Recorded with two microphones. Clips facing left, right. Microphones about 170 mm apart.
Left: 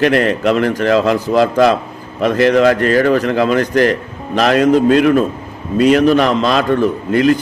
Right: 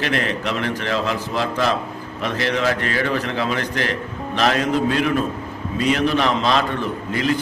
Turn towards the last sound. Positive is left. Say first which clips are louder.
# left 9 dB
turn(degrees=55)  # may be behind; listen again after turning